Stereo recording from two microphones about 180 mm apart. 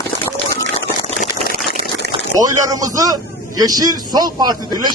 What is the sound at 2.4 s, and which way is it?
A man's voice, 20° right (ahead or behind).